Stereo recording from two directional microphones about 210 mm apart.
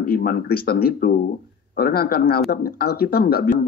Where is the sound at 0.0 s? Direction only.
45° left (ahead or behind).